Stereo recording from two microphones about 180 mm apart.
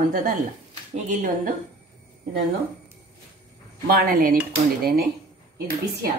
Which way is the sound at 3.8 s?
55° right (ahead or behind).